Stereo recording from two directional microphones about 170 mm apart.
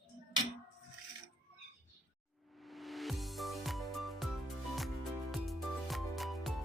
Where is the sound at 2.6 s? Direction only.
Centre (ahead or behind).